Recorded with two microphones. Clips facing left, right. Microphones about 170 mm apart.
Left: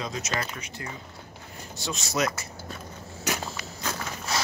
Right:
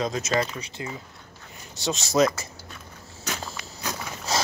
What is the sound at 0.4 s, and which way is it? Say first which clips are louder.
Speech: right 6 dB; 25° right (ahead or behind).